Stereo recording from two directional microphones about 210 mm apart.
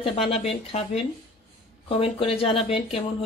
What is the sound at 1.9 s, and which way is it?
Speech, 25° left (ahead or behind).